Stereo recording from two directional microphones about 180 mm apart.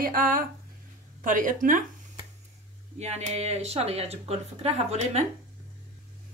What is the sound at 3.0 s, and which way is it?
Speech, 40° right (ahead or behind).